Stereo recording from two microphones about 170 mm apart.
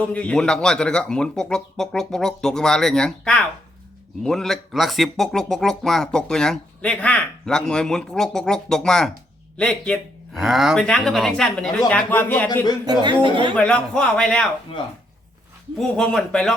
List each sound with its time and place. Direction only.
0.1 s speech: 5° left (ahead or behind)
12.8 s speech: 25° right (ahead or behind)
13.6 s speech: 5° left (ahead or behind)
15.8 s speech: 5° left (ahead or behind)